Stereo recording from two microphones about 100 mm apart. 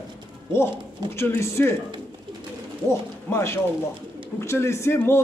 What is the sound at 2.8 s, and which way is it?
Speech, 25° left (ahead or behind).